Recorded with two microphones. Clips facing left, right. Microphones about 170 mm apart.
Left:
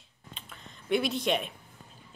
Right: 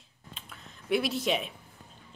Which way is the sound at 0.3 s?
5° right (ahead or behind).